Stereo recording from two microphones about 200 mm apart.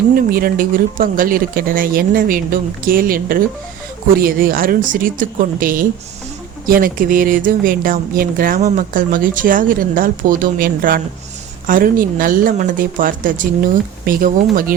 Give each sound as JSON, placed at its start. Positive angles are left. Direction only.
{"t": 0.1, "sound": "speech", "side_deg": -45}